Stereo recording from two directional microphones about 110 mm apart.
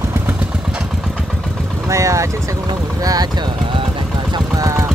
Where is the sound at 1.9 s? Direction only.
25° right (ahead or behind); by 3.8 s 45° right (ahead or behind).